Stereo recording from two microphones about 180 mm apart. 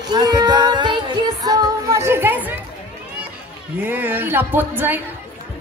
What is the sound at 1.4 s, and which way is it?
Music, 20° right (ahead or behind).